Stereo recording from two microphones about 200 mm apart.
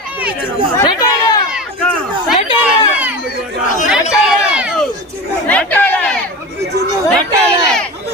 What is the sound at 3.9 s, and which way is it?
Chatter, 5° right (ahead or behind).